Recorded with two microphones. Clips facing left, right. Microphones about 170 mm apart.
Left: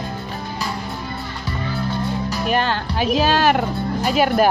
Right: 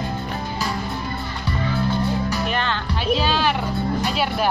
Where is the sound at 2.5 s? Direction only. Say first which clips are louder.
Left 4 dB; 45° left (ahead or behind).